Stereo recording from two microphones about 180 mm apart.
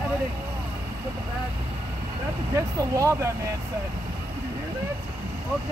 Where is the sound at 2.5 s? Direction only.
15° right (ahead or behind).